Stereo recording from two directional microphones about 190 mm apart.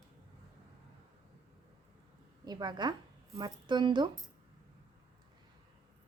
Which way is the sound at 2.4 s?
20° right (ahead or behind).